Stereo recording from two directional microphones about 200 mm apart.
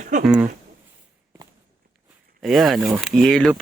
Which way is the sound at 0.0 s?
40° right (ahead or behind).